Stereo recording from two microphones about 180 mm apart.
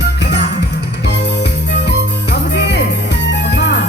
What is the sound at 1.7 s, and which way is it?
Music, 70° left (ahead or behind).